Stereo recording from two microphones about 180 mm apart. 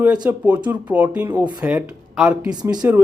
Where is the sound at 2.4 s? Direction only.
20° right (ahead or behind).